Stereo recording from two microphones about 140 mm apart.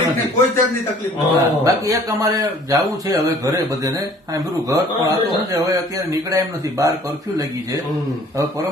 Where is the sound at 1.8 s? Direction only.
25° right (ahead or behind).